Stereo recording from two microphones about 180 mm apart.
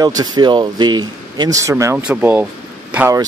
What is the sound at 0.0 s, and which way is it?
A man's voice, 20° right (ahead or behind).